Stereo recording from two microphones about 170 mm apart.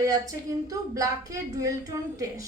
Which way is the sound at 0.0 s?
20° right (ahead or behind).